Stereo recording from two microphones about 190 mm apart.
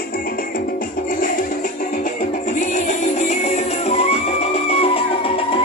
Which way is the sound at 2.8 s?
40° left (ahead or behind).